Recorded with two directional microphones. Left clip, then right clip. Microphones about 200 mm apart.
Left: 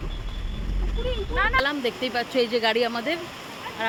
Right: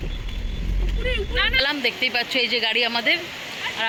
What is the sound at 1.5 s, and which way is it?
Speech, 15° left (ahead or behind).